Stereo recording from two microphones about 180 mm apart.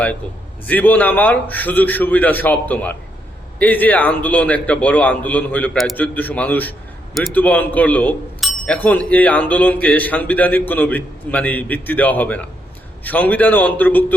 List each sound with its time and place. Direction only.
0.7 s a man's voice: 10° left (ahead or behind)